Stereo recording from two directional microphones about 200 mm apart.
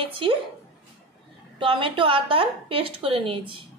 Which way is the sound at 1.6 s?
25° right (ahead or behind).